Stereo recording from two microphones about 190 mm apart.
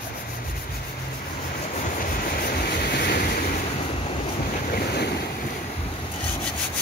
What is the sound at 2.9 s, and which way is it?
Vehicle, 60° left (ahead or behind).